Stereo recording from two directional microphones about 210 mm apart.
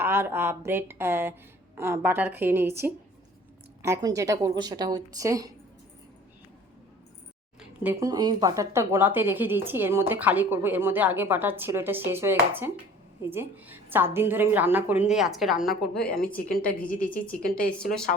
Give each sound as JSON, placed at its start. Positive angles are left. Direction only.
{"t": 0.0, "sound": "a woman's voice", "side_deg": -10}
{"t": 7.9, "sound": "a woman's voice", "side_deg": -15}
{"t": 16.8, "sound": "a woman's voice", "side_deg": 40}